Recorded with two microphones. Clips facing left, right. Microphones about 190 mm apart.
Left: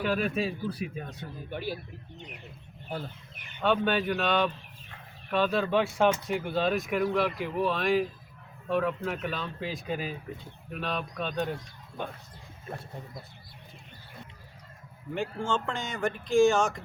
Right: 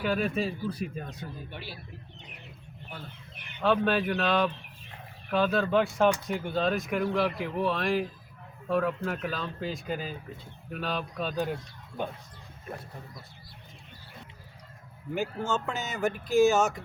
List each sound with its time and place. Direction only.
0.0 s speech: centre (ahead or behind)
1.5 s speech: 45° left (ahead or behind)
3.6 s speech: centre (ahead or behind)
15.1 s speech: 5° right (ahead or behind)